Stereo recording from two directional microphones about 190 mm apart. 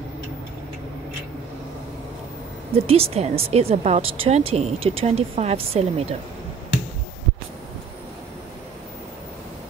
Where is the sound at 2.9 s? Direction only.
35° right (ahead or behind).